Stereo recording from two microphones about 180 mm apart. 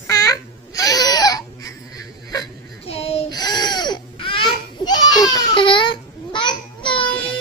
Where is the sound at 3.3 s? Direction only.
20° left (ahead or behind).